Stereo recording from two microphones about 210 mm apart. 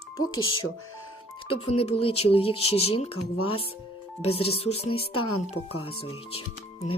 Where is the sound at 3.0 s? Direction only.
90° left.